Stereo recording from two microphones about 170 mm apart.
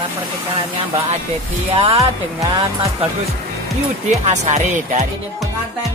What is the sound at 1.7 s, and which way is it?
Speech, 35° right (ahead or behind).